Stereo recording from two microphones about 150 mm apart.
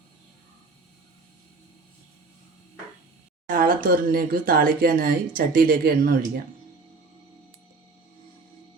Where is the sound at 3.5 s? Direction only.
75° right (ahead or behind).